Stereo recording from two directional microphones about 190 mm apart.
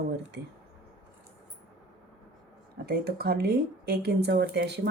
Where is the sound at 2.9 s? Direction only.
55° right (ahead or behind).